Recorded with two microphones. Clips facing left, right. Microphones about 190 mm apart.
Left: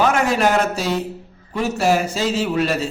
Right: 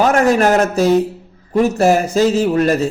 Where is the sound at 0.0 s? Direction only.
45° right (ahead or behind).